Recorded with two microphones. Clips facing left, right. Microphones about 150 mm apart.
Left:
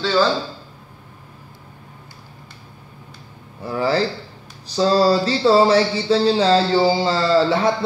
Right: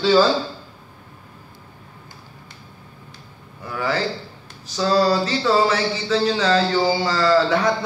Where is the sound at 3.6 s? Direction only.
30° left (ahead or behind).